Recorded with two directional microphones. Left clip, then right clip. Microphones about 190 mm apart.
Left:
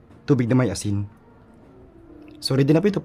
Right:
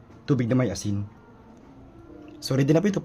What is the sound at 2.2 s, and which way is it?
Speech, 30° left (ahead or behind).